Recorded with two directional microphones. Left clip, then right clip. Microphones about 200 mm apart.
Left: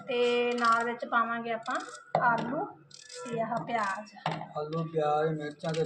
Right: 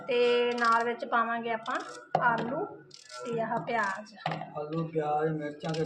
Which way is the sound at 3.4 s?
15° right (ahead or behind).